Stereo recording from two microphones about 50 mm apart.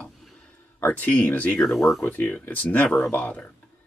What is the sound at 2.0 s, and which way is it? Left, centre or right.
Speech, left.